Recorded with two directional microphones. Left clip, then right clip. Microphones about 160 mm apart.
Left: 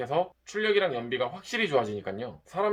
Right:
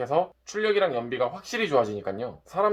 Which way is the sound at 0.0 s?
5° left (ahead or behind).